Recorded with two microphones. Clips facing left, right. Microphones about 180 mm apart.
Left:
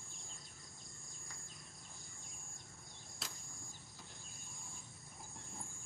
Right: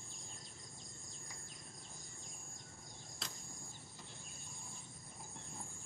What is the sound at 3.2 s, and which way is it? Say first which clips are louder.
Cricket: right 1 dB; 5° left (ahead or behind).